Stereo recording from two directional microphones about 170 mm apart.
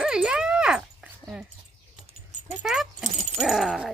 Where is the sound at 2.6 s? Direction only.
Centre (ahead or behind).